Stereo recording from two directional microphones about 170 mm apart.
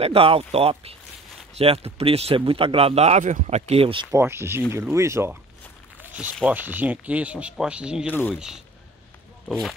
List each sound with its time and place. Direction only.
0.0 s speech: 35° right (ahead or behind)
4.1 s speech: 15° right (ahead or behind)
6.4 s speech: 10° right (ahead or behind)
8.1 s speech: 10° left (ahead or behind)
8.4 s speech: 5° right (ahead or behind)